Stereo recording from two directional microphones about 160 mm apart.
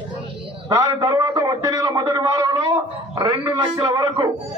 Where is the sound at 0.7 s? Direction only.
25° right (ahead or behind).